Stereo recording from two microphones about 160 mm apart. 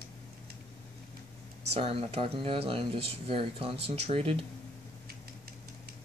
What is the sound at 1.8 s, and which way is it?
Speech, 35° right (ahead or behind).